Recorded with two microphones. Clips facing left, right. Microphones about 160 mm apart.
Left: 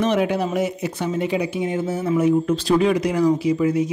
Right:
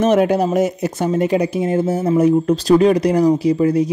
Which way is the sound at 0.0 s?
45° right (ahead or behind).